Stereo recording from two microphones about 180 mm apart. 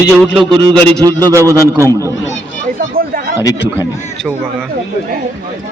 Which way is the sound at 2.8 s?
55° right (ahead or behind).